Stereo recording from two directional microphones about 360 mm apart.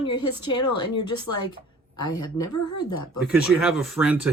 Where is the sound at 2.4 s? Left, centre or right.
Centre.